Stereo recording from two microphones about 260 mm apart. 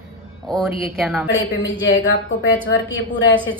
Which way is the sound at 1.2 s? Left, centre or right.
Left.